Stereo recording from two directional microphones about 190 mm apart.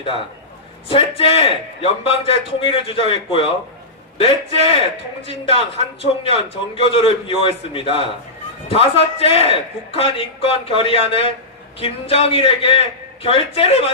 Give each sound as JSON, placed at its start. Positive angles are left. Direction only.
{"t": 0.9, "sound": "a man's voice", "side_deg": 30}